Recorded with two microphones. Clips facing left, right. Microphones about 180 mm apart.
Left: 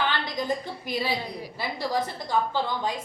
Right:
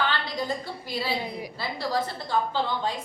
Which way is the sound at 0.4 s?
15° left (ahead or behind).